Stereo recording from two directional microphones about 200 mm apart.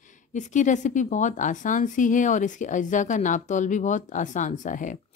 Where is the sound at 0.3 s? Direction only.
35° left (ahead or behind).